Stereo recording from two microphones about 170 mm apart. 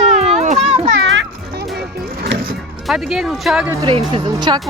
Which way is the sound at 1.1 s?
80° right.